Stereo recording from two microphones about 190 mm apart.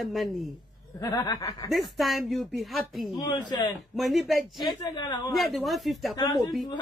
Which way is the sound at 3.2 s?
20° left (ahead or behind).